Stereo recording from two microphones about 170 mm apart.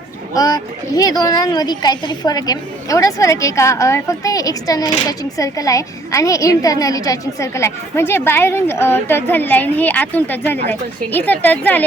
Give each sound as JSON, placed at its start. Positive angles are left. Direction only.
{"t": 0.3, "sound": "a woman's voice", "side_deg": 20}